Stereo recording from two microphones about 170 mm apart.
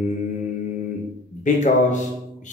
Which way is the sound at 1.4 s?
45° left (ahead or behind).